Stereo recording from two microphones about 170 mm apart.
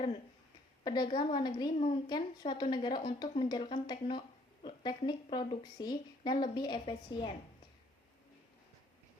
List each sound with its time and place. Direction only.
0.9 s a woman's voice: 25° left (ahead or behind)